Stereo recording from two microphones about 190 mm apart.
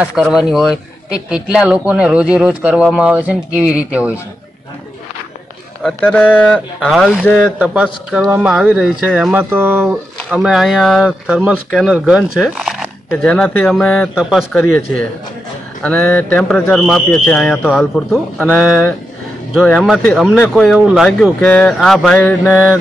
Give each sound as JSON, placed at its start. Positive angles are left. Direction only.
{"t": 0.0, "sound": "speech", "side_deg": 0}
{"t": 5.8, "sound": "speech", "side_deg": 5}